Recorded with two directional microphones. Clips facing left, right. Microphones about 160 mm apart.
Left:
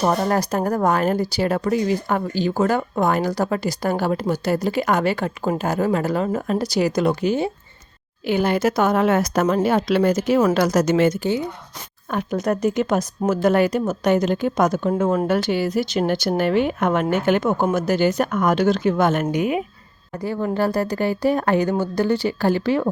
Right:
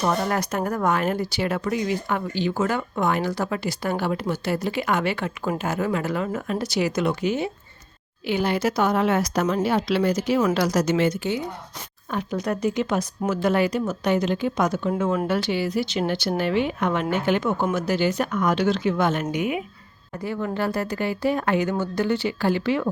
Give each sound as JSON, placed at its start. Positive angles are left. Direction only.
{"t": 0.0, "sound": "speech", "side_deg": 35}
{"t": 8.3, "sound": "a woman's voice", "side_deg": 50}